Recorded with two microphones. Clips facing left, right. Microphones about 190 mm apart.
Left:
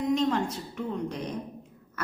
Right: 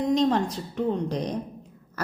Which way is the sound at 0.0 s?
35° right (ahead or behind).